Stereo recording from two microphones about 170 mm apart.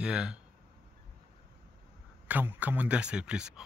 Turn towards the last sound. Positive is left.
turn(degrees=-5)  # may be behind; listen again after turning